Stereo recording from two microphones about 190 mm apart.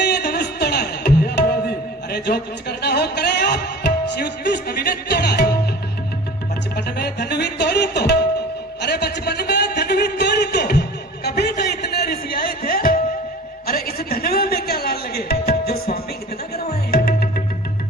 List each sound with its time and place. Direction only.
0.0 s music: 60° left (ahead or behind)
6.7 s music: 60° left (ahead or behind)
8.8 s a sound: 60° left (ahead or behind)
13.7 s music: 55° left (ahead or behind)